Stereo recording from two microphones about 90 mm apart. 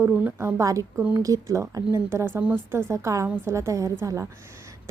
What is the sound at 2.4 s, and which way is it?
Speech, 20° right (ahead or behind).